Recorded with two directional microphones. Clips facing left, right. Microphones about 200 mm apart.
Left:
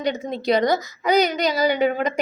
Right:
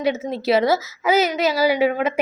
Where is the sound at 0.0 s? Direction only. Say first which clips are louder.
Right 2 dB; 5° right (ahead or behind).